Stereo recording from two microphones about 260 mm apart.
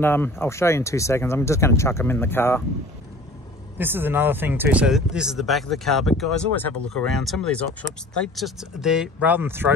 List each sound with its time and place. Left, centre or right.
0.0 s speech: centre
3.7 s speech: centre